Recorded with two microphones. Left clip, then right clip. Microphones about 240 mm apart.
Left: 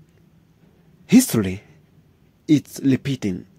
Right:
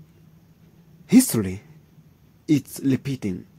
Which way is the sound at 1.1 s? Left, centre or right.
Centre.